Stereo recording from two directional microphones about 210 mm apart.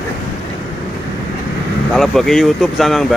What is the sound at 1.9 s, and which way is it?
Speech, centre (ahead or behind).